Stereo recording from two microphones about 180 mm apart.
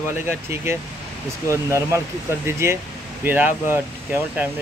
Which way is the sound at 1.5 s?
15° right (ahead or behind).